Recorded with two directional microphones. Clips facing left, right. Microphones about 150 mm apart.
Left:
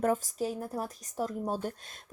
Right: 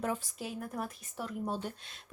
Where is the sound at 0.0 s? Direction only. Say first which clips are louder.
Left 7 dB; 45° left (ahead or behind).